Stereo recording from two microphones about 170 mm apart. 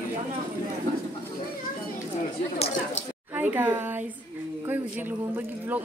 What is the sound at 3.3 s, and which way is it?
A man's voice, 10° right (ahead or behind).